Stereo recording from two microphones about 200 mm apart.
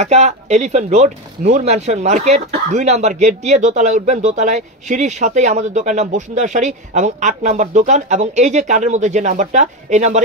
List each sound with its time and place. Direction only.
0.0 s speech: 35° right (ahead or behind)